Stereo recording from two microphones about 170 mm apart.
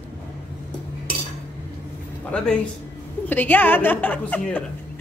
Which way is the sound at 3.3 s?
10° left (ahead or behind).